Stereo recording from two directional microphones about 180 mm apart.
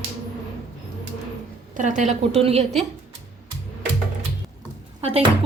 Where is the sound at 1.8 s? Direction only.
45° right (ahead or behind).